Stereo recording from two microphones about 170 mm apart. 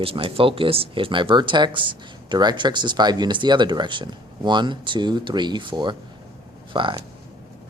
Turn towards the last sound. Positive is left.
turn(degrees=-30)  # may be behind; listen again after turning